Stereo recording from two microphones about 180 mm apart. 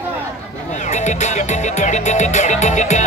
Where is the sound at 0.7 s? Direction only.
40° left (ahead or behind).